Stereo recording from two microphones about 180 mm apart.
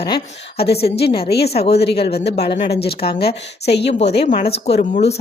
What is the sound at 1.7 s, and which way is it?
Speech, 65° left (ahead or behind).